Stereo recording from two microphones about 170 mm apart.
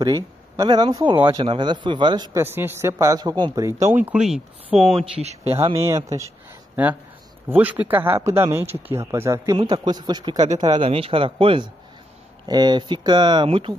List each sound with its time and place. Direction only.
0.0 s speech: 25° right (ahead or behind)
2.4 s speech: 15° right (ahead or behind)
4.9 s speech: 40° right (ahead or behind)
5.8 s speech: 15° right (ahead or behind)
7.4 s speech: 10° right (ahead or behind); by 13.7 s 30° right (ahead or behind)